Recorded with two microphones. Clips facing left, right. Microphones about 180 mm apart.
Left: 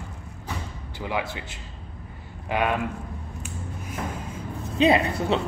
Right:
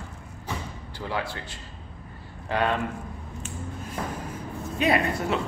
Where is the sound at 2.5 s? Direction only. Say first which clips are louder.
Left 1 dB; 10° left (ahead or behind).